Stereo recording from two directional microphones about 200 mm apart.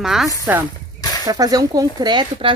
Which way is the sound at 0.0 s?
Centre (ahead or behind).